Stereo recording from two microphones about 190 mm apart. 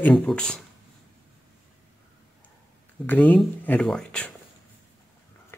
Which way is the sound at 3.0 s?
10° left (ahead or behind).